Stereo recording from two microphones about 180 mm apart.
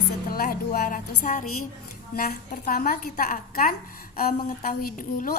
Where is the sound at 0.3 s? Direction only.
55° left (ahead or behind).